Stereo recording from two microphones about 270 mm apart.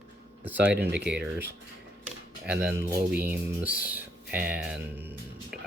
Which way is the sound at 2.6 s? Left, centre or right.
Centre.